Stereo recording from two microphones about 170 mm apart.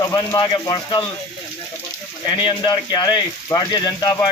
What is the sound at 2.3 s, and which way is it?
Speech, 30° left (ahead or behind).